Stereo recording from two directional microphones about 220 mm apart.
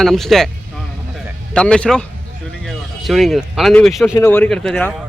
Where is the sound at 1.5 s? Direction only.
5° left (ahead or behind).